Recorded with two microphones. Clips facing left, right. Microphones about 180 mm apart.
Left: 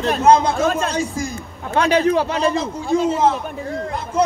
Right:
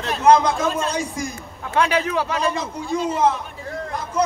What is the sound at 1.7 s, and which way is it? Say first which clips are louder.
Speech: left 4 dB; 40° left (ahead or behind).